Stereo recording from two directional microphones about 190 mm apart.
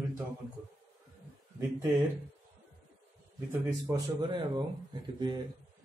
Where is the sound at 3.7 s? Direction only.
20° right (ahead or behind).